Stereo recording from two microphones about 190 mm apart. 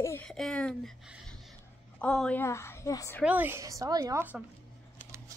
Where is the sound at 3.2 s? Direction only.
10° right (ahead or behind).